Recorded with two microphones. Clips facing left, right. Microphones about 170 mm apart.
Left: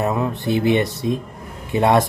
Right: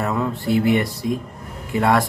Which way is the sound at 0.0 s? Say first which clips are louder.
Left 2 dB; 20° left (ahead or behind).